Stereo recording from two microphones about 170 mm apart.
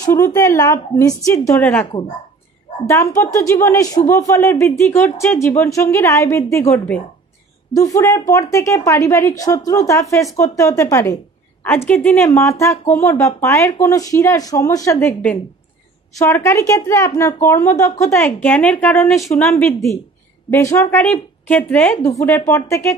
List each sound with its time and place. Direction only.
0.0 s speech: 20° left (ahead or behind)
3.2 s a woman's voice: 15° left (ahead or behind)
20.5 s speech: 15° left (ahead or behind)